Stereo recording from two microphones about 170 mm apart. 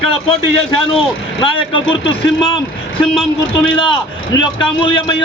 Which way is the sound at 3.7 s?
30° left (ahead or behind).